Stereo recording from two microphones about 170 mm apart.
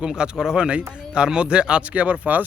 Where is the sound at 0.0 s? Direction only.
5° right (ahead or behind).